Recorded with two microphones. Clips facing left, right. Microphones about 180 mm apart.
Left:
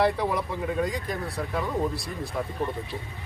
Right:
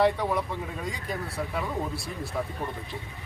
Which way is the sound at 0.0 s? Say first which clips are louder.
Even; centre (ahead or behind).